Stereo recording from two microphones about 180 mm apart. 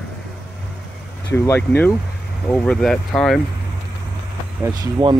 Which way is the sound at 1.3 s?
15° left (ahead or behind).